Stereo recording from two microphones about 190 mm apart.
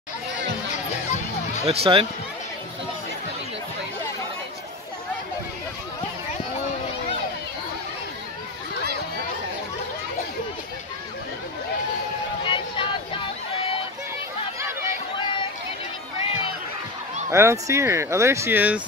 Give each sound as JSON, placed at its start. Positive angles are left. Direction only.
{"t": 0.4, "sound": "music", "side_deg": 40}
{"t": 1.6, "sound": "speech", "side_deg": -30}
{"t": 12.4, "sound": "a sound", "side_deg": 25}
{"t": 17.3, "sound": "speech", "side_deg": -15}